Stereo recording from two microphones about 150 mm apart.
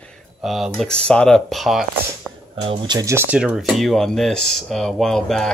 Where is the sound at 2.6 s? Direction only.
40° right (ahead or behind).